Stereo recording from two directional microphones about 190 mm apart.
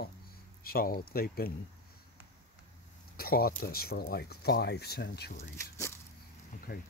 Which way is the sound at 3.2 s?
50° left (ahead or behind).